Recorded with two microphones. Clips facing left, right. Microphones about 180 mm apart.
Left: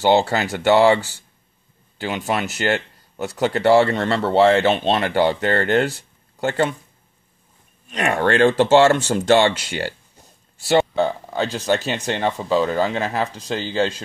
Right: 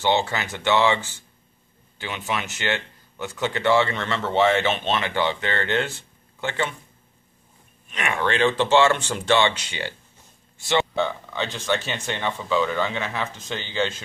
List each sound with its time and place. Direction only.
0.0 s speech: 40° left (ahead or behind)
7.9 s speech: 40° left (ahead or behind)